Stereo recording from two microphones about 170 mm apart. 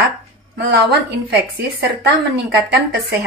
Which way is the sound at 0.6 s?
80° right.